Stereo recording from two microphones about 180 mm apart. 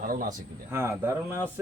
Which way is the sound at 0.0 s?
50° right (ahead or behind).